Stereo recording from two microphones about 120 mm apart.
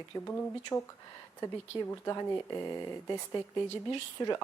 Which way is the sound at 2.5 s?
25° left (ahead or behind).